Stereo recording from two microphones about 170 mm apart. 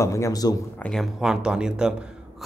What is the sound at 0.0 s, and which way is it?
Speech, 20° left (ahead or behind).